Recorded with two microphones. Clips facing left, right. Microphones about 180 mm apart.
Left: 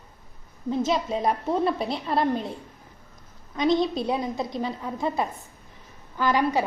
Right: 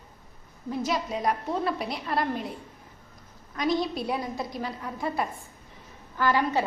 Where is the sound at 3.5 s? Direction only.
25° left (ahead or behind).